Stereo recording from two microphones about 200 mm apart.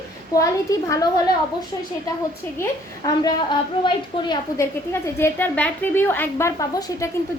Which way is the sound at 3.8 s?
20° left (ahead or behind).